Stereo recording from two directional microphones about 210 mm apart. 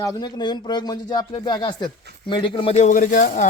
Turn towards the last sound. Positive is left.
turn(degrees=40)  # may be behind; listen again after turning